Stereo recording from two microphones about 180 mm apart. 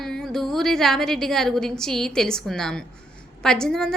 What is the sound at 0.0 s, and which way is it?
A woman's voice, 5° left (ahead or behind).